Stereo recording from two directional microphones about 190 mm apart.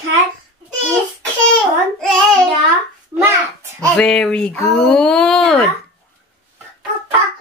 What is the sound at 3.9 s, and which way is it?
Speech, 5° left (ahead or behind).